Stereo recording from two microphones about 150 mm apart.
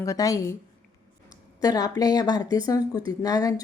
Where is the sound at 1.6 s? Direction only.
25° left (ahead or behind).